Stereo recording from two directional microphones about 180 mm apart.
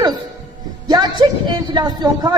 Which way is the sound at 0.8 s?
20° right (ahead or behind).